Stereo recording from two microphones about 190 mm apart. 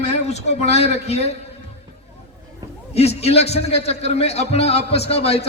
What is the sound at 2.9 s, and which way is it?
A man's voice, 35° left (ahead or behind).